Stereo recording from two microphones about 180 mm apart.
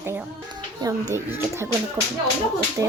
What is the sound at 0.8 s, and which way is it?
Speech, 15° right (ahead or behind).